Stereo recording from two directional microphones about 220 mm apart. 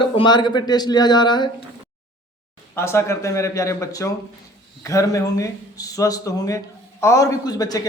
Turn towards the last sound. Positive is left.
turn(degrees=15)  # may be behind; listen again after turning